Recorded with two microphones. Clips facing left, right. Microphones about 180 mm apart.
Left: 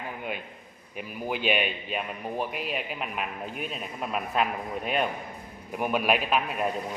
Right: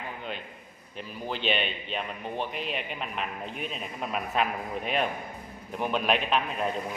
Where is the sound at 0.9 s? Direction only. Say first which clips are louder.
Left 3 dB; 10° left (ahead or behind).